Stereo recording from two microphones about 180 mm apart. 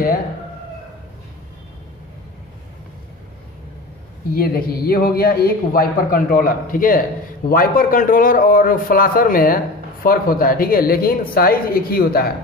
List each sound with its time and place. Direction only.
4.3 s a man's voice: 55° left (ahead or behind)